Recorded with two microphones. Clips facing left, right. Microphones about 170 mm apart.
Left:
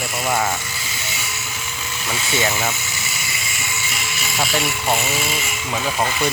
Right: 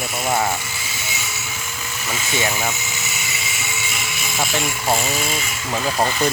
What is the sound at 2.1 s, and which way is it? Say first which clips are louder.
Speech: left 1 dB; 10° right (ahead or behind).